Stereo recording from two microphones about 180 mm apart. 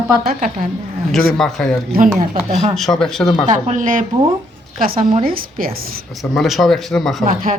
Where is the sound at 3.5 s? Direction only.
45° right (ahead or behind).